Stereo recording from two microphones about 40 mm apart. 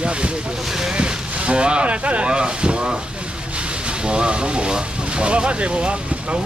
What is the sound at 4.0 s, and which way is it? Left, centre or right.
Speech, right.